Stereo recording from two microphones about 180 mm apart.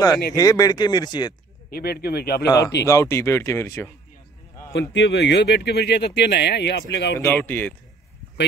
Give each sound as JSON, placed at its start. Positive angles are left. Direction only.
{"t": 0.3, "sound": "speech", "side_deg": 20}
{"t": 1.7, "sound": "speech", "side_deg": 60}
{"t": 2.4, "sound": "speech", "side_deg": 20}
{"t": 4.9, "sound": "speech", "side_deg": 80}
{"t": 7.2, "sound": "speech", "side_deg": 10}